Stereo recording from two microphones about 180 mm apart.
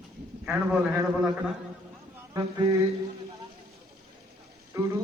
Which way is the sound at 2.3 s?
20° right (ahead or behind).